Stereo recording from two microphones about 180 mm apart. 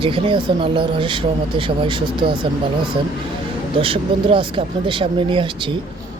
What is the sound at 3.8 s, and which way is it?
Speech, 30° right (ahead or behind).